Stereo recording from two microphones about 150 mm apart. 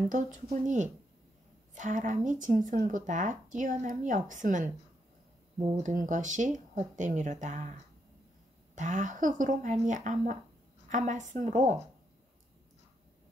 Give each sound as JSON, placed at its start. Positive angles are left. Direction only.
{"t": 0.1, "sound": "speech", "side_deg": -55}